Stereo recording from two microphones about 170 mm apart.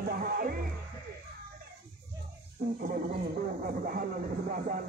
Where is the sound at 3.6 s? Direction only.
55° right (ahead or behind).